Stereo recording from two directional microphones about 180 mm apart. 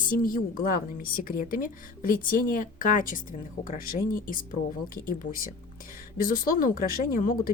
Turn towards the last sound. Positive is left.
turn(degrees=50)  # may be behind; listen again after turning